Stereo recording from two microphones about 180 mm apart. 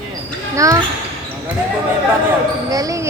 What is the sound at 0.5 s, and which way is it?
Speech, 15° right (ahead or behind).